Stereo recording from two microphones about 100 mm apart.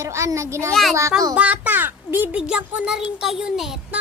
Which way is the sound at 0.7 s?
Centre (ahead or behind).